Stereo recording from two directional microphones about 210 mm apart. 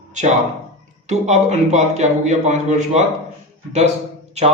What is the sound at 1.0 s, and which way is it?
A man's voice, 35° right (ahead or behind).